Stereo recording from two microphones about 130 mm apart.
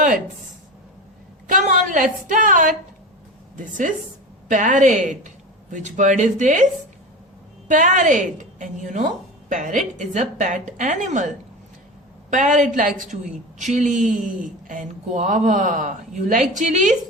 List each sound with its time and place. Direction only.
1.5 s a woman's voice: 85° right
4.4 s speech: 75° right (ahead or behind)
7.7 s speech: 75° right (ahead or behind)
12.3 s speech: 70° right (ahead or behind)